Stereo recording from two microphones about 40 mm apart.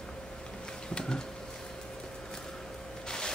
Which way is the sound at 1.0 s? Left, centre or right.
Left.